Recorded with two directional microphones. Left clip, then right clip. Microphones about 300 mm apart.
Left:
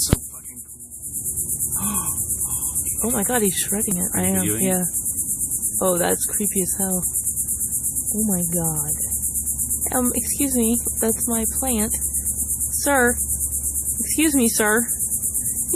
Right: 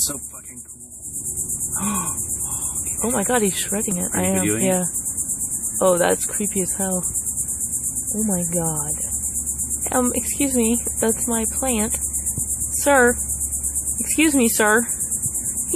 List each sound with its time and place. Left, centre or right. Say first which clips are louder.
1.8 s music: right 4 dB; right
3.0 s a woman's voice: right 2 dB; centre
5.8 s a woman's voice: right 4 dB; centre
8.3 s a woman's voice: right 4 dB; centre